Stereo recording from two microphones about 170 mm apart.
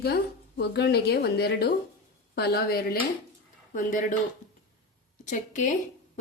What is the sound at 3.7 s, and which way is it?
Speech, 50° left (ahead or behind).